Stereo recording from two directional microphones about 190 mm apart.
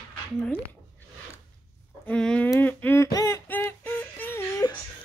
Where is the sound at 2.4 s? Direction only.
10° left (ahead or behind).